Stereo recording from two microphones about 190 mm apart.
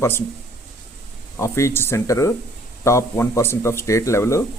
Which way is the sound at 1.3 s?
15° left (ahead or behind).